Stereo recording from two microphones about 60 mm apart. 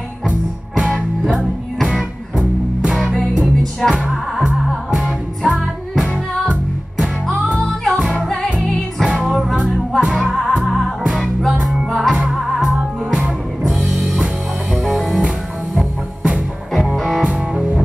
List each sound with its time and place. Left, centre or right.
0.3 s music: centre
7.6 s music: centre
9.0 s music: centre
17.2 s music: centre